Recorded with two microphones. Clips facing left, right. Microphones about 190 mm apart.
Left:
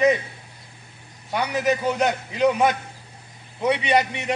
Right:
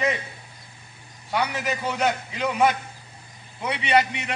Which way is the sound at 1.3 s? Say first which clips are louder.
Left 4 dB; 20° left (ahead or behind).